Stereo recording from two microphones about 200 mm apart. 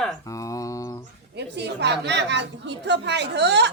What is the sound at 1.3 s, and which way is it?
A woman's voice, 60° right (ahead or behind).